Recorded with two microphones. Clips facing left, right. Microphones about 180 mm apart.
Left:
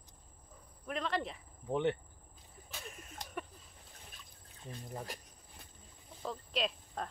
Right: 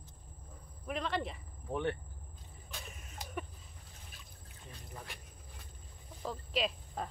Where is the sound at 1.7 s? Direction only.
20° left (ahead or behind).